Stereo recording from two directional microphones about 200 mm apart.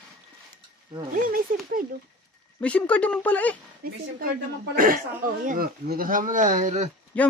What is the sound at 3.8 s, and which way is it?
A woman's voice, 50° right (ahead or behind).